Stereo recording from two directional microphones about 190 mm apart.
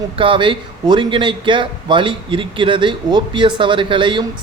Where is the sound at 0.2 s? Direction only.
25° right (ahead or behind).